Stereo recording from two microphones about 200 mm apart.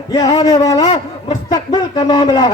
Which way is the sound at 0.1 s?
20° left (ahead or behind).